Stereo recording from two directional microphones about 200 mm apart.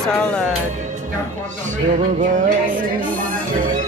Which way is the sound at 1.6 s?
40° right (ahead or behind).